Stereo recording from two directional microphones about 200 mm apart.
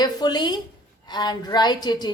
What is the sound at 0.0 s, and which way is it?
A woman's voice, 20° left (ahead or behind).